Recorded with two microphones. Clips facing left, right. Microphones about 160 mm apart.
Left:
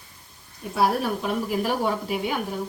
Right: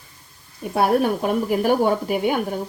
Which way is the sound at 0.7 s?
60° right (ahead or behind).